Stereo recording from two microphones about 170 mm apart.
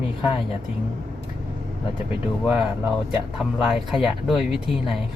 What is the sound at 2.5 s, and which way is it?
Speech, centre (ahead or behind).